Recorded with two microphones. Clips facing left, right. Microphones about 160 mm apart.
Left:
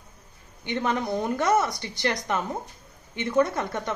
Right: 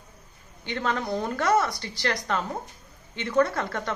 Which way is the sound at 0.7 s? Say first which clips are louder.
Left 2 dB; 15° left (ahead or behind).